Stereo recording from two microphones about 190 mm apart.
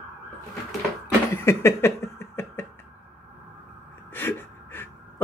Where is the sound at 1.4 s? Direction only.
15° left (ahead or behind).